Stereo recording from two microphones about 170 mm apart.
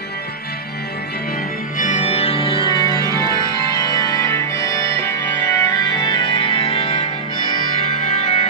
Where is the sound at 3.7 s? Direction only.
20° left (ahead or behind).